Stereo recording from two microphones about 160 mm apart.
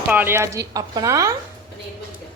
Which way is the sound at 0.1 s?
15° right (ahead or behind).